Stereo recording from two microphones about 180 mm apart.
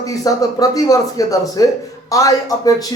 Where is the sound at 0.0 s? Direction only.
20° left (ahead or behind).